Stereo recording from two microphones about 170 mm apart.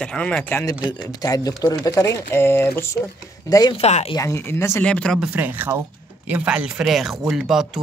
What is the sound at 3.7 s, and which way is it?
Speech, 40° left (ahead or behind).